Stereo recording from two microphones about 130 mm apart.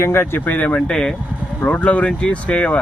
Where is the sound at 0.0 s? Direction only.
20° left (ahead or behind).